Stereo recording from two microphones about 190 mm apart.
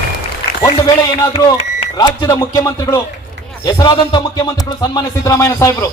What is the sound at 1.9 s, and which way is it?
Speech, 20° left (ahead or behind).